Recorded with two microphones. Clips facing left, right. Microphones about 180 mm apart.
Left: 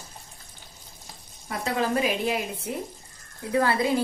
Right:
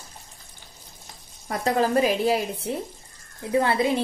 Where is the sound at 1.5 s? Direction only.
40° right (ahead or behind).